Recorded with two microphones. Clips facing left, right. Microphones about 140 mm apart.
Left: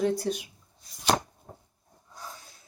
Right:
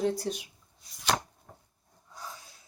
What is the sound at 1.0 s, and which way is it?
Chopping, 35° left (ahead or behind).